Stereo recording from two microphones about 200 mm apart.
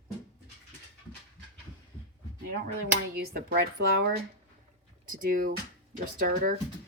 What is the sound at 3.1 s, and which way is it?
Speech, 50° right (ahead or behind).